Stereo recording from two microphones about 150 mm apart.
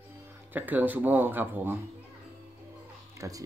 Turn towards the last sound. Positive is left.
turn(degrees=-20)  # may be behind; listen again after turning